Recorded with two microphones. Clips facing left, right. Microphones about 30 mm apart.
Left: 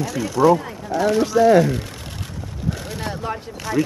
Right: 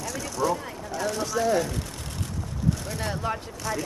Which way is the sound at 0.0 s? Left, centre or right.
Centre.